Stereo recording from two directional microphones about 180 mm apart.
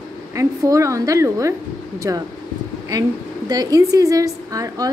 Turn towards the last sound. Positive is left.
turn(degrees=-20)  # may be behind; listen again after turning